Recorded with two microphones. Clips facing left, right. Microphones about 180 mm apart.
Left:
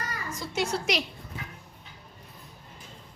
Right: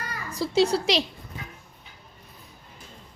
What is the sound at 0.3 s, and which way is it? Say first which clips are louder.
Speech: right 9 dB; 35° right (ahead or behind).